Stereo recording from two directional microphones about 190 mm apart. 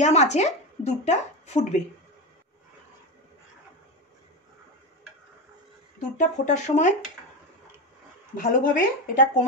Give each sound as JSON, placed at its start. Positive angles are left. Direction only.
{"t": 0.0, "sound": "a woman's voice", "side_deg": 35}
{"t": 5.9, "sound": "speech", "side_deg": 40}
{"t": 8.4, "sound": "speech", "side_deg": 45}